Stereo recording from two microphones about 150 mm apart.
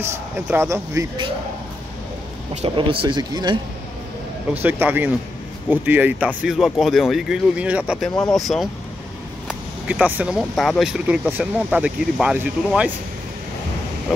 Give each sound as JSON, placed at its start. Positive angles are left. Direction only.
{"t": 0.0, "sound": "speech", "side_deg": -15}
{"t": 2.5, "sound": "speech", "side_deg": -40}
{"t": 4.6, "sound": "speech", "side_deg": -15}